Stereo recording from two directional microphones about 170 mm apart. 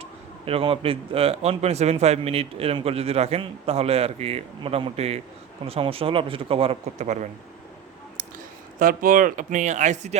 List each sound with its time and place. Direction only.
0.0 s a man's voice: 35° right (ahead or behind)
8.8 s speech: 55° right (ahead or behind)